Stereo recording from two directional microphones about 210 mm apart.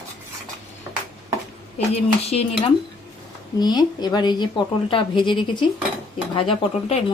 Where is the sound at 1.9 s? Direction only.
30° left (ahead or behind).